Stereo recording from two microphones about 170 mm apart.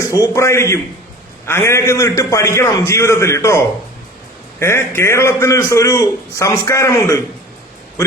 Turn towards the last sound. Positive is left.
turn(degrees=15)  # may be behind; listen again after turning